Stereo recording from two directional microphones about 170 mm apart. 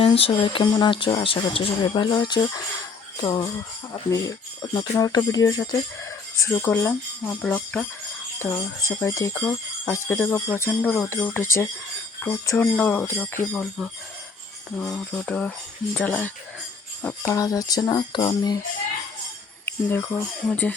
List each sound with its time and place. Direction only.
0.0 s speech: 30° left (ahead or behind)
3.2 s jingle bell: 20° left (ahead or behind)
4.1 s speech: 20° left (ahead or behind)
9.0 s speech: 15° left (ahead or behind)
17.3 s speech: 20° left (ahead or behind)
19.6 s speech: 15° left (ahead or behind)